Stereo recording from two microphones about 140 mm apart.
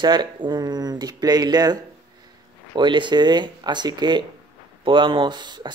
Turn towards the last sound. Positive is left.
turn(degrees=-30)  # may be behind; listen again after turning